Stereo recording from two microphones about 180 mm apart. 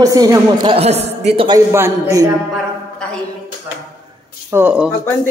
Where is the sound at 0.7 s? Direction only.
35° right (ahead or behind).